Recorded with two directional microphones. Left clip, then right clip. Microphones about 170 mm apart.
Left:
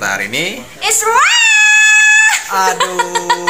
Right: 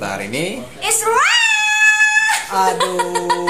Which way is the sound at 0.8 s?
20° left (ahead or behind).